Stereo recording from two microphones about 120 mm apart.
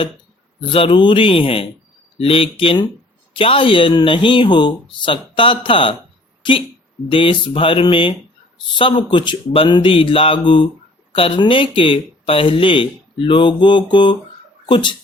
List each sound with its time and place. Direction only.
0.6 s speech: 45° left (ahead or behind)
7.1 s speech: 45° left (ahead or behind)